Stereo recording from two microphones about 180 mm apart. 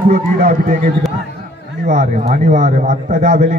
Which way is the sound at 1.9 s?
45° right (ahead or behind).